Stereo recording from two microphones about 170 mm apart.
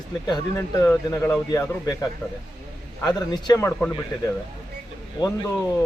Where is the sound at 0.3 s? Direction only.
20° left (ahead or behind).